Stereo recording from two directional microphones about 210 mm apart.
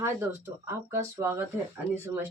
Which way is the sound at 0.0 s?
15° right (ahead or behind).